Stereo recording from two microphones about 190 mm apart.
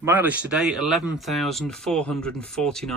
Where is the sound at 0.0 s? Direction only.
10° right (ahead or behind).